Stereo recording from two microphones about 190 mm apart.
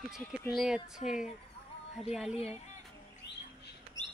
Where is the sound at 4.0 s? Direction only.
20° right (ahead or behind).